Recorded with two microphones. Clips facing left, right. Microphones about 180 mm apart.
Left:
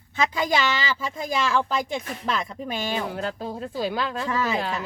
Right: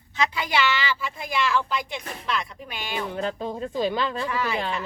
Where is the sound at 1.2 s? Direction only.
40° left (ahead or behind).